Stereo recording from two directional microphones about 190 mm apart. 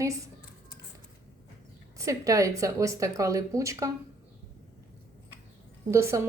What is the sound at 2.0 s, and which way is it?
Speech, 15° right (ahead or behind).